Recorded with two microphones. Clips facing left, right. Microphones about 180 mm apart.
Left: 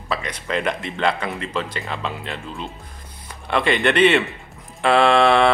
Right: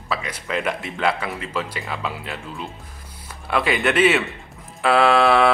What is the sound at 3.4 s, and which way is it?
Speech, 5° right (ahead or behind).